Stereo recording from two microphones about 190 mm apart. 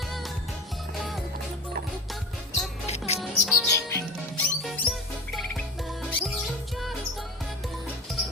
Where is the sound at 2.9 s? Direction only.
35° left (ahead or behind).